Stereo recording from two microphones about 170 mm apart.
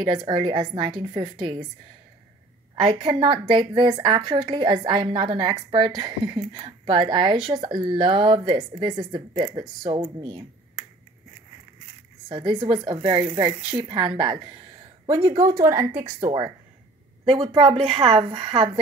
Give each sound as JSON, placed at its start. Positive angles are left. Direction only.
{"t": 0.3, "sound": "a woman's voice", "side_deg": -30}
{"t": 2.7, "sound": "a woman's voice", "side_deg": -30}
{"t": 12.3, "sound": "a woman's voice", "side_deg": -25}